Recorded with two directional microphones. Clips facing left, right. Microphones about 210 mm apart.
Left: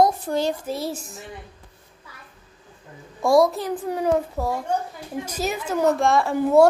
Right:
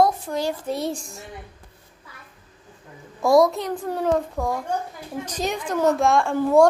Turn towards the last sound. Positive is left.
turn(degrees=0)  # may be behind; listen again after turning